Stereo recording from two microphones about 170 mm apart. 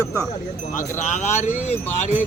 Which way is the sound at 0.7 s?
45° left (ahead or behind).